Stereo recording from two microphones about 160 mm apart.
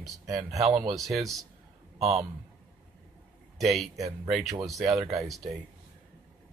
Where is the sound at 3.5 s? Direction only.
Centre (ahead or behind).